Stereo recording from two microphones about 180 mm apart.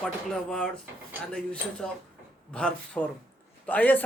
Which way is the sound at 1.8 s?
5° left (ahead or behind).